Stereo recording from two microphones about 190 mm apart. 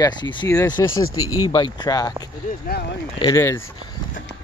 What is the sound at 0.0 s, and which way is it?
Speech, 20° left (ahead or behind).